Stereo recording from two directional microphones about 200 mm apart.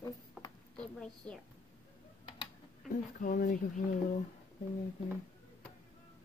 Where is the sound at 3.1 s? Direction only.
45° left (ahead or behind).